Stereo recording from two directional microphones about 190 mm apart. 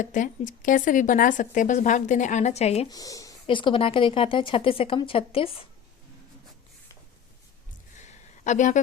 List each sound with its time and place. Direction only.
0.0 s speech: 40° left (ahead or behind)
2.9 s a woman's voice: 20° left (ahead or behind)
7.9 s a sound: 40° left (ahead or behind)